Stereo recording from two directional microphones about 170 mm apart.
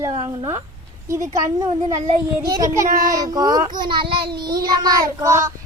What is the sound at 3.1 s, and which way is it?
Speech, 20° right (ahead or behind).